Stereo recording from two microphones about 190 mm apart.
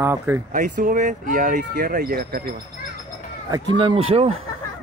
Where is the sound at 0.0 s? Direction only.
15° right (ahead or behind).